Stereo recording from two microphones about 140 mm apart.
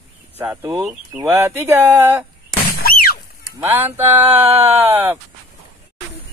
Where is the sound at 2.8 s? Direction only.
90° left.